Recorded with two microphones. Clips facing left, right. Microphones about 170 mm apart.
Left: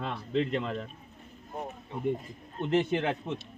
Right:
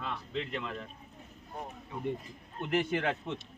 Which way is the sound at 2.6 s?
20° left (ahead or behind).